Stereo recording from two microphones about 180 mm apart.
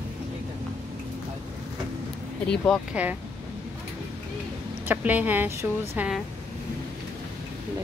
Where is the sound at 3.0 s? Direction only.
5° right (ahead or behind).